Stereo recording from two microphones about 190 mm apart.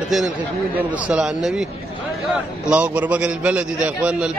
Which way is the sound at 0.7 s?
5° right (ahead or behind).